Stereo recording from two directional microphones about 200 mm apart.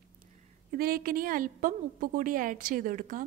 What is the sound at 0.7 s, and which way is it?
A woman's voice, 50° right (ahead or behind).